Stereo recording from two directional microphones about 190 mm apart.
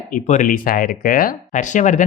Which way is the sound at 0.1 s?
45° left (ahead or behind).